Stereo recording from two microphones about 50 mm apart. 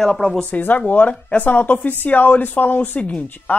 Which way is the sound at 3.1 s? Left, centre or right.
Left.